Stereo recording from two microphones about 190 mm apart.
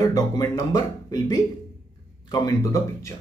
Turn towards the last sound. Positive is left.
turn(degrees=15)  # may be behind; listen again after turning